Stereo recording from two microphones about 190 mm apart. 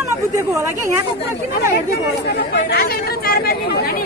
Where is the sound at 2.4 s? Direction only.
60° left (ahead or behind).